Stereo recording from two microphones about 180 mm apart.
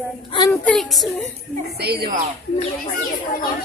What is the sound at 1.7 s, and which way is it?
Speech, 60° right (ahead or behind).